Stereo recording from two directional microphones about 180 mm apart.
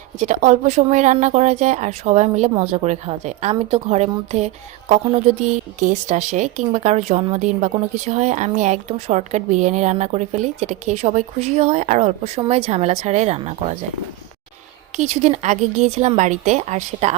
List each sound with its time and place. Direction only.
0.2 s speech: 40° right (ahead or behind)
14.9 s speech: 40° right (ahead or behind)